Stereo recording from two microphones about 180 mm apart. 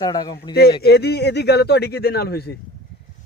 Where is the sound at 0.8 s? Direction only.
65° left (ahead or behind).